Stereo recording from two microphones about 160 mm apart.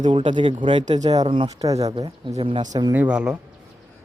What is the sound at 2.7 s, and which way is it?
Speech, 25° right (ahead or behind).